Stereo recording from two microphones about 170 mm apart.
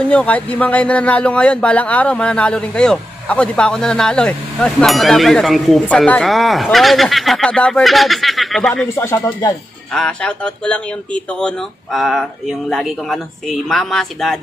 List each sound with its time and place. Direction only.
0.1 s speech: 10° left (ahead or behind)
8.8 s speech: 15° left (ahead or behind)
9.9 s speech: 5° left (ahead or behind)